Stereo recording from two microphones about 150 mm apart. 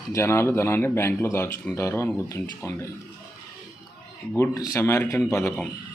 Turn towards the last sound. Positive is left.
turn(degrees=20)  # may be behind; listen again after turning